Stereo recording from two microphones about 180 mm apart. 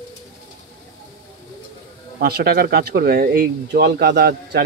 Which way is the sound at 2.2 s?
60° right (ahead or behind).